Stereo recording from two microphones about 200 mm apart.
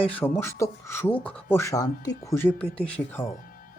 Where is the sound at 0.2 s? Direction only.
10° left (ahead or behind).